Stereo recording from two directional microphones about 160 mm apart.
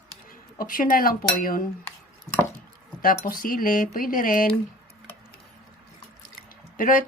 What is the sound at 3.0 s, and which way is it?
Speech, 65° left (ahead or behind).